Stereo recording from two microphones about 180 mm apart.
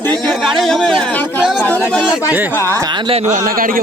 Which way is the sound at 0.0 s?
5° left (ahead or behind).